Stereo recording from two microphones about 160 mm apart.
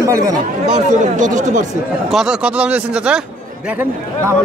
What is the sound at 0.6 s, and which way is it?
Speech, 50° right (ahead or behind).